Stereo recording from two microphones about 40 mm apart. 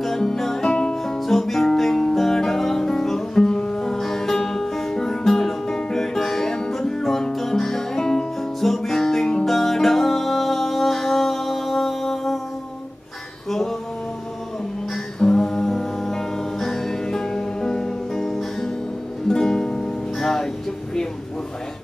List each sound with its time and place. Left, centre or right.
0.0 s music: centre
1.0 s music: centre
3.4 s music: left
3.9 s music: centre
8.5 s music: centre
13.5 s music: centre
15.1 s music: centre